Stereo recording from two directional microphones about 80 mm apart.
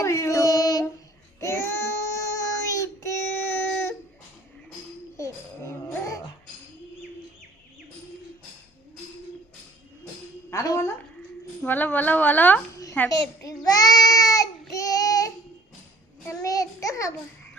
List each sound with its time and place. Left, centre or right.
0.0 s a sound: left
1.4 s child singing: left
5.1 s music: left
10.5 s a woman's voice: left
11.6 s a woman's voice: left
13.1 s child singing: left